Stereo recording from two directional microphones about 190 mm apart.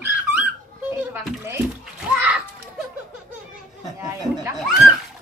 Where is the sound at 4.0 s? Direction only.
15° right (ahead or behind).